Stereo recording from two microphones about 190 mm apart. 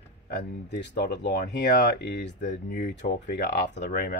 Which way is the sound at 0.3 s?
60° left (ahead or behind).